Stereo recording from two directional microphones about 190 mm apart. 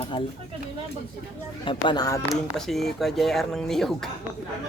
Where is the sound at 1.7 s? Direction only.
25° left (ahead or behind).